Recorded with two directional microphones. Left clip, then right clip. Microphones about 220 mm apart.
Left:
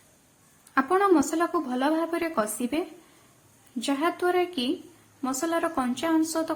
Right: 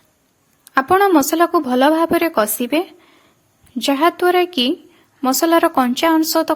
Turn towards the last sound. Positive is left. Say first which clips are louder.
# right 11 dB
turn(degrees=-40)  # may be behind; listen again after turning